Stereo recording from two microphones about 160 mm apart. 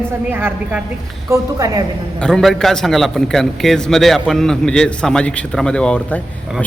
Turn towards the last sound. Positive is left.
turn(degrees=5)  # may be behind; listen again after turning